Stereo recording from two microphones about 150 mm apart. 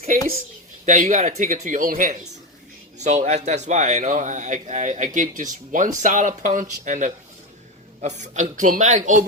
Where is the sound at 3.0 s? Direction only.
50° right (ahead or behind).